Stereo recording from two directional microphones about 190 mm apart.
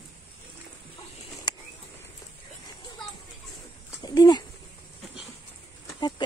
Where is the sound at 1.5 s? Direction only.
20° left (ahead or behind).